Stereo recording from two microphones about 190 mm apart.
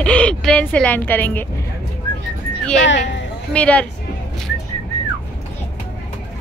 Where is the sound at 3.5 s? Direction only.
5° left (ahead or behind).